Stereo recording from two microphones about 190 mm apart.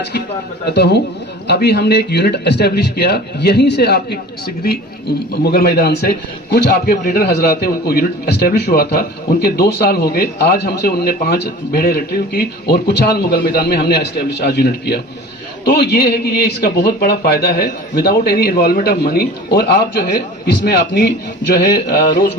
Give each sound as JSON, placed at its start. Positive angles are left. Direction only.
{"t": 0.7, "sound": "a man's voice", "side_deg": 60}